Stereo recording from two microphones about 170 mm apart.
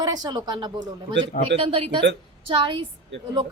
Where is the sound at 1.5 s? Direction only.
35° right (ahead or behind).